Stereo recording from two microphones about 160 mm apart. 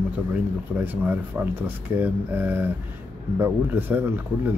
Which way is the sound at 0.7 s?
10° right (ahead or behind).